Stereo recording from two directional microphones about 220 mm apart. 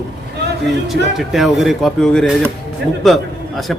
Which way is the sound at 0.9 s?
Centre (ahead or behind).